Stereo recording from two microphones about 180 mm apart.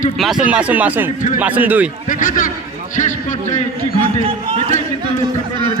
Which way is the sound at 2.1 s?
45° left (ahead or behind).